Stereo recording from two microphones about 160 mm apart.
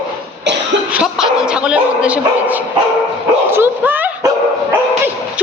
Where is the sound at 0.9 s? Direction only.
5° right (ahead or behind).